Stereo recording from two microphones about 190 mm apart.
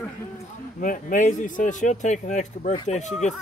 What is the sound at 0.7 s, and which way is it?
Speech, 45° left (ahead or behind).